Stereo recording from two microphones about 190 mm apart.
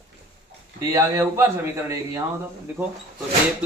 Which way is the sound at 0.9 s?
15° right (ahead or behind).